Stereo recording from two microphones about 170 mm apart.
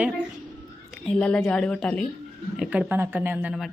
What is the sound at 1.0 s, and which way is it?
A woman's voice, 5° left (ahead or behind).